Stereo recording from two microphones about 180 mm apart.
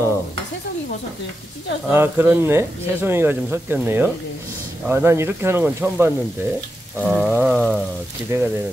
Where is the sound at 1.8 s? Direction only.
10° right (ahead or behind).